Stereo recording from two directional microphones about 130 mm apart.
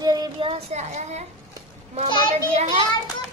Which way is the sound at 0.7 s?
60° right (ahead or behind).